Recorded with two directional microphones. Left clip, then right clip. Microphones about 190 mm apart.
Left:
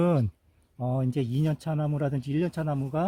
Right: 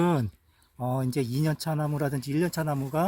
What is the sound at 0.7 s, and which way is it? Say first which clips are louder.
Speech: right 1 dB; 5° left (ahead or behind).